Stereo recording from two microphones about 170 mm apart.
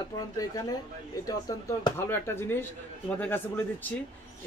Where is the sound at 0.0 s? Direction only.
20° left (ahead or behind).